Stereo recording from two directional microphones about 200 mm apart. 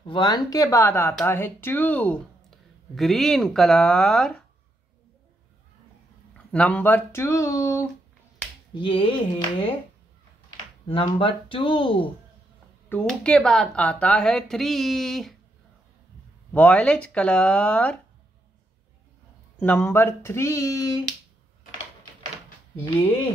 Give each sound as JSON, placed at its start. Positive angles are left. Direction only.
{"t": 0.0, "sound": "speech", "side_deg": 25}
{"t": 6.3, "sound": "speech", "side_deg": 5}
{"t": 8.7, "sound": "speech", "side_deg": 25}
{"t": 10.9, "sound": "speech", "side_deg": 25}
{"t": 12.9, "sound": "speech", "side_deg": 5}
{"t": 16.5, "sound": "speech", "side_deg": 5}
{"t": 19.6, "sound": "speech", "side_deg": 10}